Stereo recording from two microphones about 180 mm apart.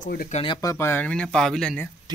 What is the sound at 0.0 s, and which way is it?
Speech, 50° left (ahead or behind).